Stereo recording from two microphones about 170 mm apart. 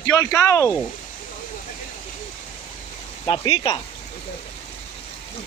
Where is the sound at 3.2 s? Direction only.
25° left (ahead or behind).